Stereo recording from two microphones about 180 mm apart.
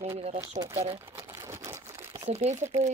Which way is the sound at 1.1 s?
20° right (ahead or behind).